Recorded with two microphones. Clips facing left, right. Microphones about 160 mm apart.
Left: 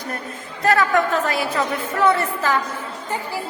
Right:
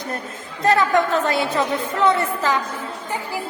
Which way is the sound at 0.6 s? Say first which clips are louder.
Right 1 dB; 20° right (ahead or behind).